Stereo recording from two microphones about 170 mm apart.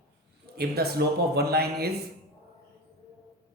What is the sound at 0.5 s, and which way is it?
A man's voice, 65° right (ahead or behind).